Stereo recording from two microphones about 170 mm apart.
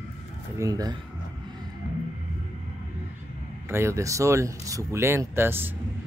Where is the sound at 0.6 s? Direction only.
20° right (ahead or behind).